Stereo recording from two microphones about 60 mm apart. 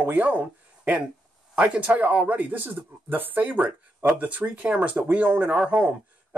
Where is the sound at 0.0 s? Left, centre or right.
Right.